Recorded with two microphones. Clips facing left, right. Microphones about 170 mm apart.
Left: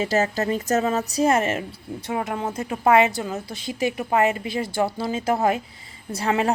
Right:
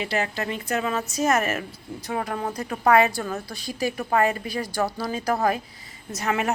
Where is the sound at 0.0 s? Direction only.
40° left (ahead or behind).